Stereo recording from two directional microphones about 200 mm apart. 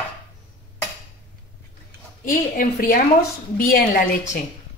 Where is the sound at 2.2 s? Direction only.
45° left (ahead or behind).